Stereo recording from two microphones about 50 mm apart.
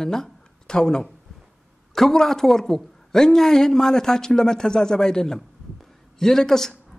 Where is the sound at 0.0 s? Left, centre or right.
Centre.